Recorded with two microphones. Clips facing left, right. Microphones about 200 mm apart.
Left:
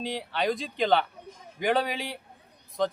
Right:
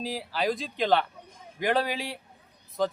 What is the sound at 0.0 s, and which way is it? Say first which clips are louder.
A man's voice: even; 5° right (ahead or behind).